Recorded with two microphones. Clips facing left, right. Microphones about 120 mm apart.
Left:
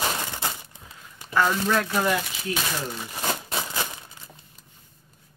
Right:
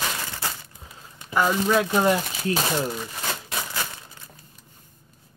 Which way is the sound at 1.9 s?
25° right (ahead or behind).